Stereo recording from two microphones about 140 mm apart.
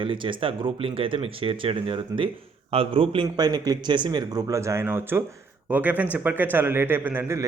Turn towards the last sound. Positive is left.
turn(degrees=-15)  # may be behind; listen again after turning